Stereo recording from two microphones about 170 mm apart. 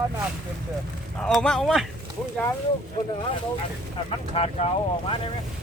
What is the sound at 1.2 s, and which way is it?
Speech, 5° left (ahead or behind).